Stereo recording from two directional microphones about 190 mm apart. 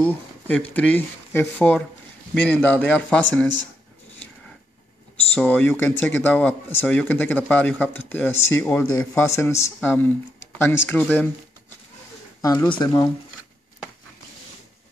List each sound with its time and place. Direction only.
0.0 s speech: 10° left (ahead or behind)
5.3 s speech: 10° left (ahead or behind)
12.4 s speech: 20° left (ahead or behind)